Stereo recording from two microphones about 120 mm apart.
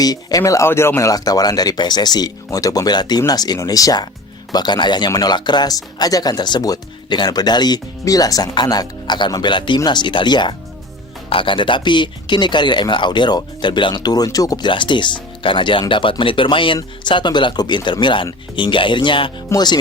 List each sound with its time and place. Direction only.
0.0 s speech: 35° left (ahead or behind)